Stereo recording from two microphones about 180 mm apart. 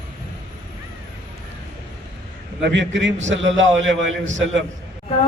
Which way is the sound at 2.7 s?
90° right.